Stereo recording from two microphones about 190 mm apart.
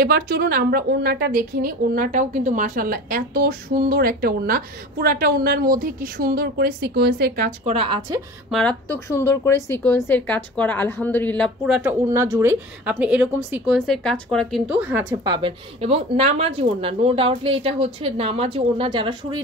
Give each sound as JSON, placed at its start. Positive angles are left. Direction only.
{"t": 0.0, "sound": "a woman's voice", "side_deg": -55}
{"t": 7.6, "sound": "speech", "side_deg": -30}
{"t": 8.5, "sound": "a woman's voice", "side_deg": 5}
{"t": 11.6, "sound": "a woman's voice", "side_deg": -5}
{"t": 13.7, "sound": "speech", "side_deg": 5}
{"t": 14.7, "sound": "a woman's voice", "side_deg": -10}
{"t": 15.2, "sound": "speech", "side_deg": -25}